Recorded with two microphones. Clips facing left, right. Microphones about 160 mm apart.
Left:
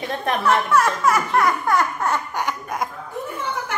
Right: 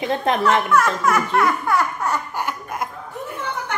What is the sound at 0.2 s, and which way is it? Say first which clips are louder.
Speech: even; 20° right (ahead or behind).